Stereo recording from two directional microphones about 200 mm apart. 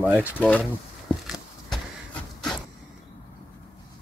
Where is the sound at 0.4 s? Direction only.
5° left (ahead or behind).